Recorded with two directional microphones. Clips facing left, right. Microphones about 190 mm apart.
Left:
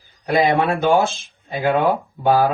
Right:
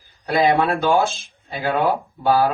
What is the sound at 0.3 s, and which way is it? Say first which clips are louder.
Speech: even; 15° left (ahead or behind).